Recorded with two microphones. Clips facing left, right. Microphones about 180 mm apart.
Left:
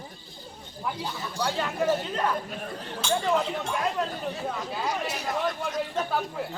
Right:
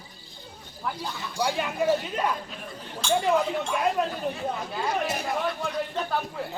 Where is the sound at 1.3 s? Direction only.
10° right (ahead or behind).